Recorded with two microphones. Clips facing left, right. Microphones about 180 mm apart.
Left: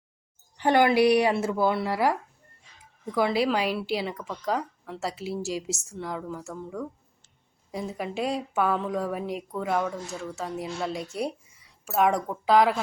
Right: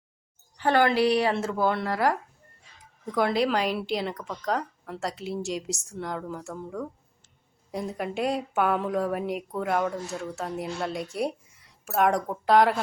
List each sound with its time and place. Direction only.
0.5 s speech: 15° left (ahead or behind); by 12.8 s centre (ahead or behind)